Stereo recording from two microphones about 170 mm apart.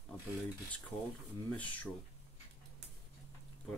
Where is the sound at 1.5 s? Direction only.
10° left (ahead or behind).